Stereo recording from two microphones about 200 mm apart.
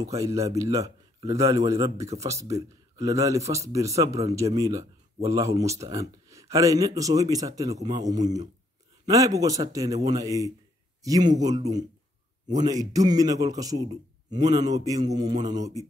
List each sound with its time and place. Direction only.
0.0 s a man's voice: 15° right (ahead or behind)